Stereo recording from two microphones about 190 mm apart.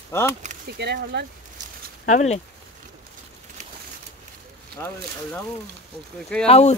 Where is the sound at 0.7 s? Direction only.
65° right (ahead or behind).